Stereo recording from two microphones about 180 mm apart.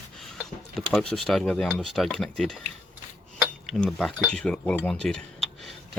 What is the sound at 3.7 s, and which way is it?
Speech, centre (ahead or behind).